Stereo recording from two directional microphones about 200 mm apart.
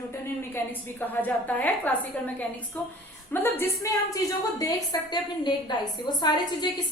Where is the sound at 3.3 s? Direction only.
10° left (ahead or behind).